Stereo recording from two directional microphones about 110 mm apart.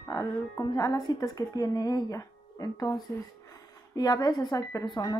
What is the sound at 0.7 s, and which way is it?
A woman's voice, 35° left (ahead or behind).